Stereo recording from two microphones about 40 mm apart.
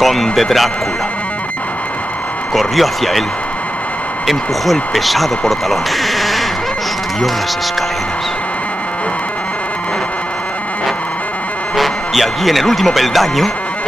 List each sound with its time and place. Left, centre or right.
0.0 s speech: centre
2.5 s speech: centre
4.3 s speech: centre
11.7 s a man's voice: centre